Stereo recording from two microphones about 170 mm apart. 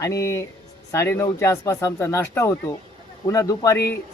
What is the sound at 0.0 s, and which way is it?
A man's voice, 20° left (ahead or behind).